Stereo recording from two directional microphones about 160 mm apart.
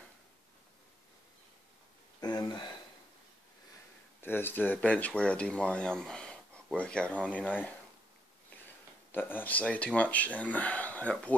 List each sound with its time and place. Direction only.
2.1 s a sound: 25° left (ahead or behind)
4.2 s speech: 15° left (ahead or behind)
9.3 s speech: 10° left (ahead or behind)